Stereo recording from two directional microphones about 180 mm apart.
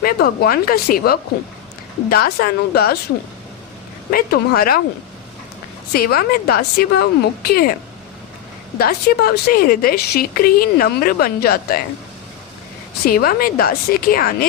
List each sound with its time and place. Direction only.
0.0 s speech: 55° left (ahead or behind)
4.1 s speech: 55° left (ahead or behind)
5.9 s speech: 55° left (ahead or behind)
8.8 s speech: 60° left (ahead or behind)
13.1 s a woman's voice: 55° left (ahead or behind)